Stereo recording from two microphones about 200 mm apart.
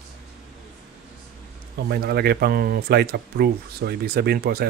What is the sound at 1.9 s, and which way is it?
Speech, 50° right (ahead or behind).